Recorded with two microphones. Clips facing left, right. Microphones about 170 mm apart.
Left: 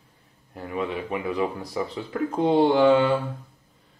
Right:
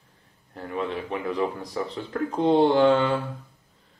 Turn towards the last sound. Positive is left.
turn(degrees=5)  # may be behind; listen again after turning